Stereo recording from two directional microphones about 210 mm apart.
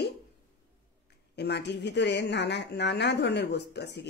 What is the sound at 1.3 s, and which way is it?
Speech, 55° left (ahead or behind).